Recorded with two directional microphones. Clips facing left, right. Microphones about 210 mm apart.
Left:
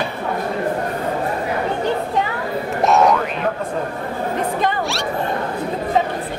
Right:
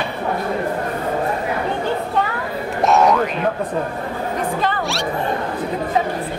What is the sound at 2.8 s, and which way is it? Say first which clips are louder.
Boing: right 1 dB; centre (ahead or behind).